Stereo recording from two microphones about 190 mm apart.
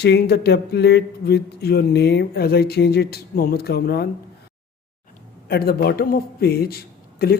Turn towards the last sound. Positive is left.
turn(degrees=55)  # may be behind; listen again after turning